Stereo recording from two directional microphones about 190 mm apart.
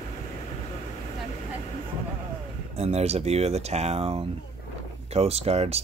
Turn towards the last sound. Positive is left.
turn(degrees=-35)  # may be behind; listen again after turning